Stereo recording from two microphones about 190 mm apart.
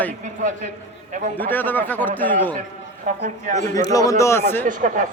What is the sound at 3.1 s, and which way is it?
Speech, 40° right (ahead or behind).